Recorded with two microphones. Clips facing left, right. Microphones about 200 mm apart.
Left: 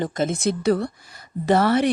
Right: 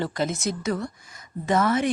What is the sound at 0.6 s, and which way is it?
Speech, 35° left (ahead or behind).